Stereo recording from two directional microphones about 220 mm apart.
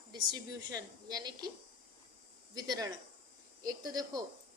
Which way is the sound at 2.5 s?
20° right (ahead or behind).